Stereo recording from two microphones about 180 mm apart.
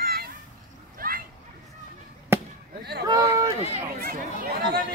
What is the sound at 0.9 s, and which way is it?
Children playing, 55° right (ahead or behind).